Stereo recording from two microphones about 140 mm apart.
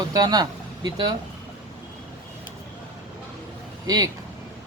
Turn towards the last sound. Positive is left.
turn(degrees=-25)  # may be behind; listen again after turning